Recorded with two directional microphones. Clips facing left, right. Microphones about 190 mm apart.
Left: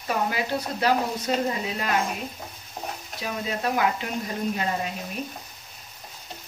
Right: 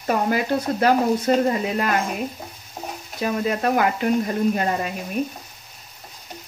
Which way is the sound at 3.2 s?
50° right (ahead or behind).